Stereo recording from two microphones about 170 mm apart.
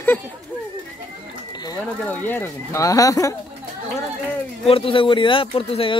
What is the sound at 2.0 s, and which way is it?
Speech, 10° left (ahead or behind).